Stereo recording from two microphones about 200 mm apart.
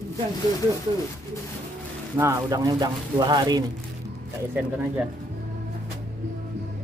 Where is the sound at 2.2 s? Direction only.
15° right (ahead or behind).